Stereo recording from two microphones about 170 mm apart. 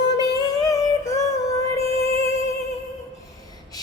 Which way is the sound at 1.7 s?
15° left (ahead or behind).